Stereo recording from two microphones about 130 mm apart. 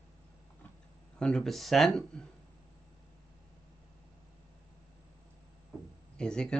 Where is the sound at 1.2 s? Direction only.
5° left (ahead or behind).